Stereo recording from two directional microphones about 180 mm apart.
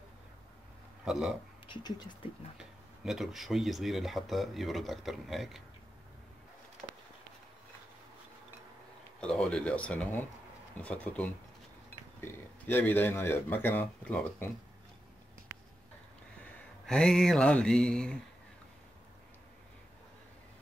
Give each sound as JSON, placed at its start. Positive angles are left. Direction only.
{"t": 1.0, "sound": "speech", "side_deg": 0}
{"t": 1.7, "sound": "speech", "side_deg": 25}
{"t": 3.1, "sound": "speech", "side_deg": 0}
{"t": 9.2, "sound": "speech", "side_deg": 5}
{"t": 16.8, "sound": "speech", "side_deg": 5}